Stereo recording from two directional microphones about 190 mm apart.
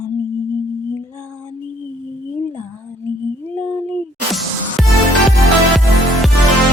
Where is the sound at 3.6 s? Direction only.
10° left (ahead or behind).